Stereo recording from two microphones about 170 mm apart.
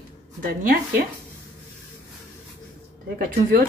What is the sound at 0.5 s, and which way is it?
Speech, 55° right (ahead or behind).